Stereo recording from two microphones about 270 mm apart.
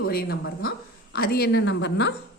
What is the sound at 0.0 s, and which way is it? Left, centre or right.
A woman's voice, left.